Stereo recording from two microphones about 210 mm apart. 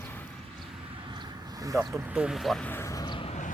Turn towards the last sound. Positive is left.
turn(degrees=30)  # may be behind; listen again after turning